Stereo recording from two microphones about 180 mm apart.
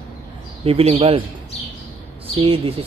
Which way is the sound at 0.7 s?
30° right (ahead or behind).